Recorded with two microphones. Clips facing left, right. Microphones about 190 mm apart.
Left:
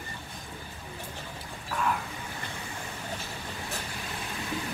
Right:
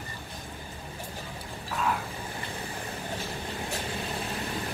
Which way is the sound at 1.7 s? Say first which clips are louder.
Even; centre (ahead or behind).